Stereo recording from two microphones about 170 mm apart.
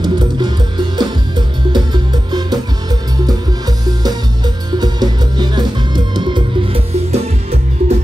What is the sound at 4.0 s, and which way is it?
Music, 25° right (ahead or behind).